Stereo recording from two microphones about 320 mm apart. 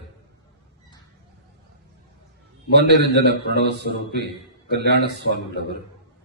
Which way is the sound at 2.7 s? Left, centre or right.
Right.